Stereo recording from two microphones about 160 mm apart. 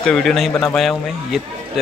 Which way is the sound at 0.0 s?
5° left (ahead or behind).